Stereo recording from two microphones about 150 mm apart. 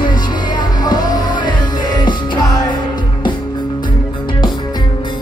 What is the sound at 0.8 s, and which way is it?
Music, 30° left (ahead or behind).